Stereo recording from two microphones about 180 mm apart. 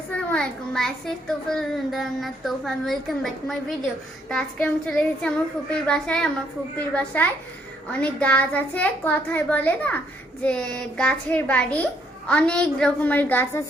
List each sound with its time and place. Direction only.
0.1 s a child's voice: 5° left (ahead or behind)